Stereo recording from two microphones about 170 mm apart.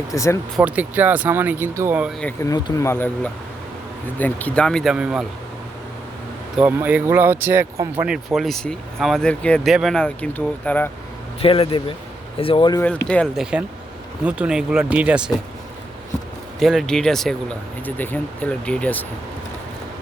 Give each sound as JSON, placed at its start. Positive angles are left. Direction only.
{"t": 0.1, "sound": "speech", "side_deg": 20}
{"t": 0.5, "sound": "speech", "side_deg": -10}
{"t": 2.2, "sound": "speech", "side_deg": 20}
{"t": 6.6, "sound": "speech", "side_deg": -10}
{"t": 11.3, "sound": "speech", "side_deg": 35}
{"t": 13.1, "sound": "speech", "side_deg": 5}
{"t": 13.4, "sound": "speech", "side_deg": -5}
{"t": 16.6, "sound": "speech", "side_deg": 0}